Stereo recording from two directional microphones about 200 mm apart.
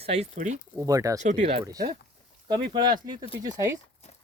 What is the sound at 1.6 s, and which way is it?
Speech, 20° right (ahead or behind).